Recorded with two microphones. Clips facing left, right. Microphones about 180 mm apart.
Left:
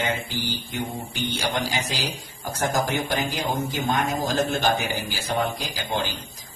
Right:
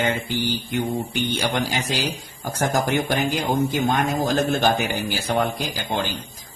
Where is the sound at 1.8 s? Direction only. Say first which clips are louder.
Right 4 dB; 60° right (ahead or behind).